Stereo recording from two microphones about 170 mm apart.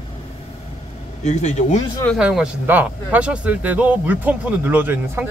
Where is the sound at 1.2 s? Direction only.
40° left (ahead or behind).